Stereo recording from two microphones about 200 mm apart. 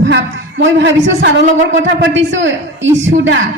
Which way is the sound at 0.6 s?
65° right (ahead or behind).